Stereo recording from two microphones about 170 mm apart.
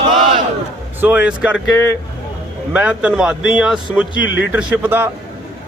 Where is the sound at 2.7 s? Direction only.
5° right (ahead or behind).